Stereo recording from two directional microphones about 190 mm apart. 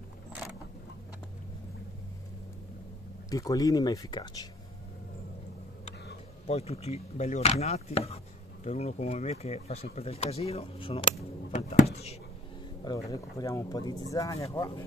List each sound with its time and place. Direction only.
3.3 s speech: 20° left (ahead or behind)
6.4 s speech: 35° left (ahead or behind)
11.9 s a sound: 35° left (ahead or behind)
12.8 s speech: 20° left (ahead or behind)